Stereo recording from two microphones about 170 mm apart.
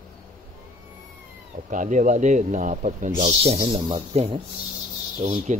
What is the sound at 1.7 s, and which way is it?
Speech, 50° right (ahead or behind).